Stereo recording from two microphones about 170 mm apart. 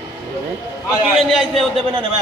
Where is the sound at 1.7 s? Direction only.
30° right (ahead or behind).